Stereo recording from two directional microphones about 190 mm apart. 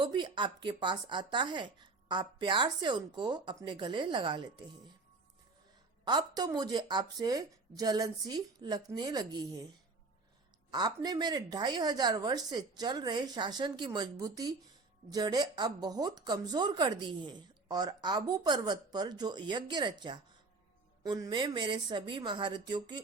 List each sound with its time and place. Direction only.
0.0 s speech: 25° right (ahead or behind)
6.1 s speech: 20° right (ahead or behind)
10.7 s speech: 20° right (ahead or behind)